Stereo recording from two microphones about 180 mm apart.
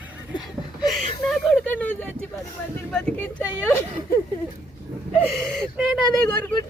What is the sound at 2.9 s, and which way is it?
Speech, 10° left (ahead or behind).